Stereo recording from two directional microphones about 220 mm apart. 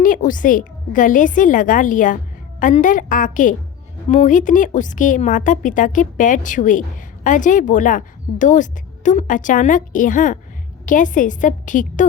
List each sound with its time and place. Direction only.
0.0 s a woman's voice: 35° left (ahead or behind)